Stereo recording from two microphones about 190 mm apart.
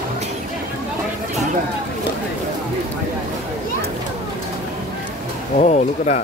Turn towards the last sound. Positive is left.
turn(degrees=40)  # may be behind; listen again after turning